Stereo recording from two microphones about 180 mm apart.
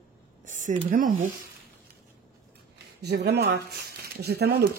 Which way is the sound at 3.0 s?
65° right (ahead or behind).